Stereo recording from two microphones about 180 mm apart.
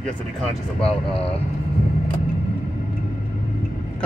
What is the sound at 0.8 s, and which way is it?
Speech, 30° left (ahead or behind).